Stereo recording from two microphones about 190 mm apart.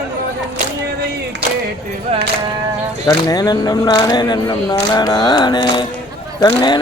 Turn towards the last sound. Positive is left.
turn(degrees=20)  # may be behind; listen again after turning